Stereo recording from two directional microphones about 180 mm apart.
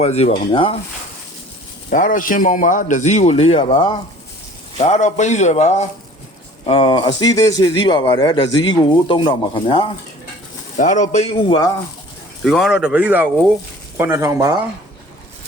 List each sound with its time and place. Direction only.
0.0 s speech: 35° left (ahead or behind)
1.9 s a man's voice: 50° left (ahead or behind); by 3.9 s 25° left (ahead or behind)
4.8 s speech: 40° left (ahead or behind)
6.7 s speech: 30° left (ahead or behind)
10.8 s speech: 45° left (ahead or behind)
12.4 s speech: centre (ahead or behind); by 14.6 s 20° right (ahead or behind)